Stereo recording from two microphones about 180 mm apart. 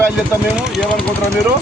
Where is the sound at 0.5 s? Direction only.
Centre (ahead or behind).